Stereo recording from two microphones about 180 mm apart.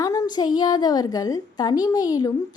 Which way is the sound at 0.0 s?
20° left (ahead or behind).